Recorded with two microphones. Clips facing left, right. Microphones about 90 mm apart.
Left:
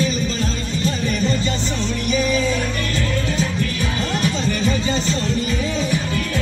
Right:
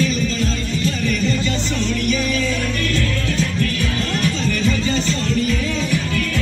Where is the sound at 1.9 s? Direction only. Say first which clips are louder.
Left 2 dB; 20° left (ahead or behind).